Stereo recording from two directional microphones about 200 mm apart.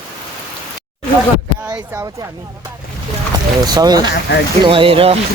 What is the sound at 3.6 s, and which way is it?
Speech, 20° right (ahead or behind).